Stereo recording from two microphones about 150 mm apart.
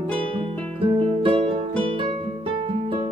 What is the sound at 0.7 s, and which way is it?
Music, 40° right (ahead or behind).